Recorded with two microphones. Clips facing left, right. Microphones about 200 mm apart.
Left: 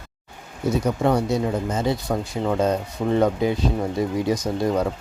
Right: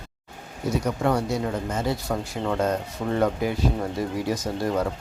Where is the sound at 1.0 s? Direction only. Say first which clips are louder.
Left 4 dB; 20° left (ahead or behind).